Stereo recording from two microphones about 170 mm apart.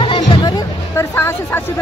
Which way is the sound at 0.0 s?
30° left (ahead or behind).